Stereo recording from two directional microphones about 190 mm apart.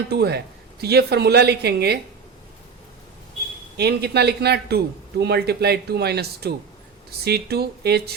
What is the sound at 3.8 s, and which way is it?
A man's voice, 60° right (ahead or behind).